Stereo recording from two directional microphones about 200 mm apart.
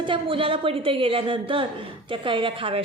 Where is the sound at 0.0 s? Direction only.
25° right (ahead or behind).